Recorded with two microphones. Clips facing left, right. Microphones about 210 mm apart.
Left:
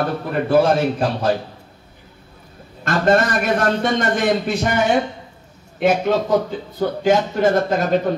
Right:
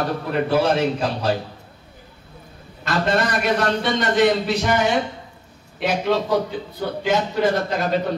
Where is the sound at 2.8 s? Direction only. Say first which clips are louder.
Left 4 dB; 45° left (ahead or behind).